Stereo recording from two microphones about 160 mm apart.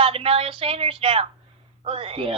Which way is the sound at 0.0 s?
35° right (ahead or behind).